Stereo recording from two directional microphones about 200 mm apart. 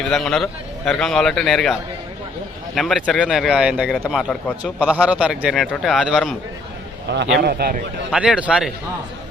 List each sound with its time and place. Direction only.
0.0 s a man's voice: 5° left (ahead or behind)
7.1 s a man's voice: 60° right (ahead or behind)
8.1 s a man's voice: 5° right (ahead or behind)